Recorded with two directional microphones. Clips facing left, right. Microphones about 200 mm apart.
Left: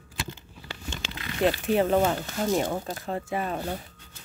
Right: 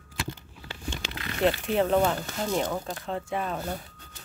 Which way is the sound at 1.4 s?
5° left (ahead or behind).